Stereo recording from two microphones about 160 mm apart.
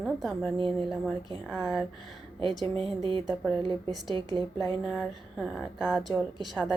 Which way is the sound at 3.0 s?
30° right (ahead or behind).